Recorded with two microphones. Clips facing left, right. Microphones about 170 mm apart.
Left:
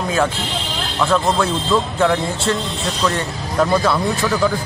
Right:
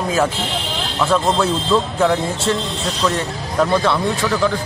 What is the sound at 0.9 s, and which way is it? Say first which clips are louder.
Speech: even; centre (ahead or behind).